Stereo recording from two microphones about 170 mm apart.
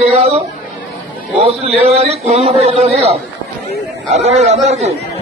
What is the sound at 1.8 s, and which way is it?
A man's voice, 40° right (ahead or behind).